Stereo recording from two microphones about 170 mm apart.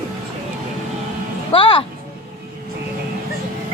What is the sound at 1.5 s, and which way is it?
Speech, 30° left (ahead or behind).